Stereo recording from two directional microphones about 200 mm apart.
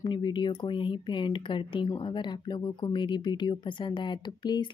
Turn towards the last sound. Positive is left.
turn(degrees=20)  # may be behind; listen again after turning